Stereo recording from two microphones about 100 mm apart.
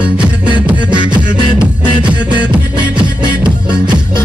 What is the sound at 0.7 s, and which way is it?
Beatboxing, 50° right (ahead or behind).